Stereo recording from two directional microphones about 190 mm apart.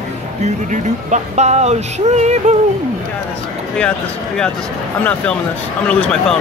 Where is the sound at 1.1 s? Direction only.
35° right (ahead or behind).